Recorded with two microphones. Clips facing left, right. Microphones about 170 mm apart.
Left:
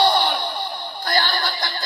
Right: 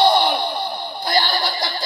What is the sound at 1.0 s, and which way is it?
Snicker, 30° right (ahead or behind).